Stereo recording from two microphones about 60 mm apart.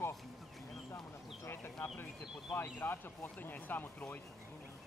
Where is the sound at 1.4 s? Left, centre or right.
Left.